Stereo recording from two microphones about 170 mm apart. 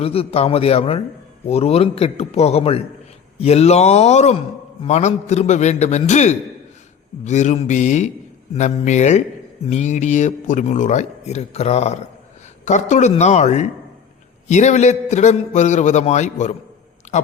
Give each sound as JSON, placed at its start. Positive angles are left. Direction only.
{"t": 0.0, "sound": "a man's voice", "side_deg": 35}